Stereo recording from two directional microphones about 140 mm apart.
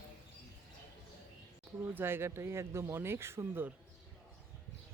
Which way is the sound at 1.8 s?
15° right (ahead or behind).